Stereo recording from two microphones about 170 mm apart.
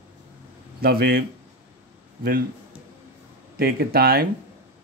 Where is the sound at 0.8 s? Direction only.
60° right (ahead or behind).